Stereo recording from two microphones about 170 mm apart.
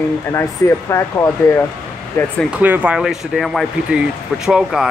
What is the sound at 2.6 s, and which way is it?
Speech, 10° right (ahead or behind).